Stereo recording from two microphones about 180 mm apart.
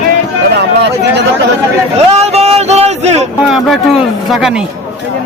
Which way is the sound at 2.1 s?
35° right (ahead or behind).